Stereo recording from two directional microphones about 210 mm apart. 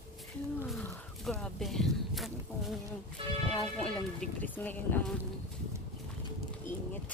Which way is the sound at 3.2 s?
25° right (ahead or behind).